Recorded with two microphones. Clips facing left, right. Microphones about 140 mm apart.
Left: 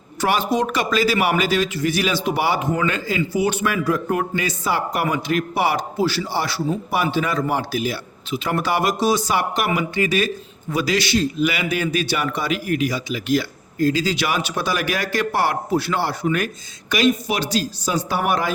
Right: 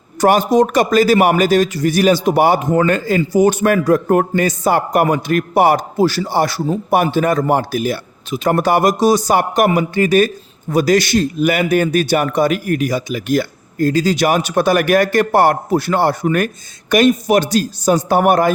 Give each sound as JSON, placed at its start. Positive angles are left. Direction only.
{"t": 0.2, "sound": "a man's voice", "side_deg": -45}